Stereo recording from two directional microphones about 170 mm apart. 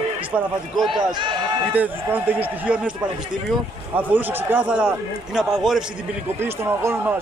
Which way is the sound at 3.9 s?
10° right (ahead or behind).